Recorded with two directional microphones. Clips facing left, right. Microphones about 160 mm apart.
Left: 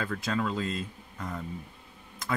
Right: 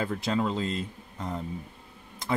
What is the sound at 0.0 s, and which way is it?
Speech, 25° right (ahead or behind).